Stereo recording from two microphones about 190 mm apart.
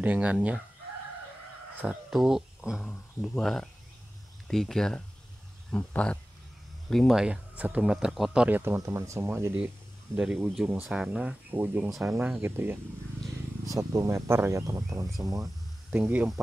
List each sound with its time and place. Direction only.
0.0 s speech: 5° right (ahead or behind)
1.8 s speech: 5° right (ahead or behind)